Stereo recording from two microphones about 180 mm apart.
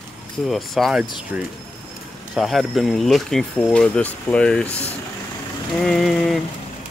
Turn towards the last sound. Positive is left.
turn(degrees=0)  # may be behind; listen again after turning